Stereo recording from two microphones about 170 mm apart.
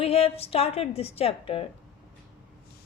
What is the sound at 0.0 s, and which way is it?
A woman's voice, 35° left (ahead or behind).